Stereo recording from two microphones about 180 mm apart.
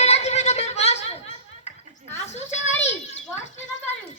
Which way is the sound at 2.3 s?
40° left (ahead or behind).